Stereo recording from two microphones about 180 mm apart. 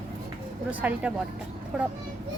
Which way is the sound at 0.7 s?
10° right (ahead or behind).